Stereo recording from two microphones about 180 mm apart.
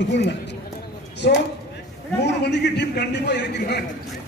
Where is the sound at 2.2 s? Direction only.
70° left (ahead or behind).